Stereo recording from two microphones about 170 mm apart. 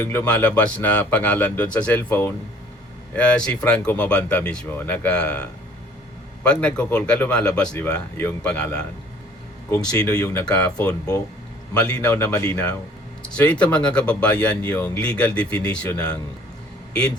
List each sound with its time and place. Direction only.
0.0 s speech: 15° left (ahead or behind)
9.6 s speech: 20° left (ahead or behind)
10.4 s speech: 5° left (ahead or behind)
10.8 s speech: 20° left (ahead or behind)
11.7 s speech: 10° left (ahead or behind)